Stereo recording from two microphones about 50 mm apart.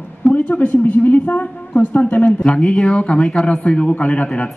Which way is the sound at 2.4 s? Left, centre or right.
Centre.